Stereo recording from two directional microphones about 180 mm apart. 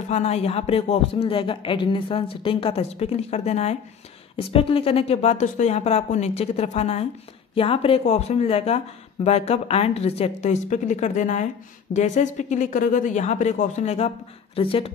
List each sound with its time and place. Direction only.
0.1 s speech: 35° left (ahead or behind)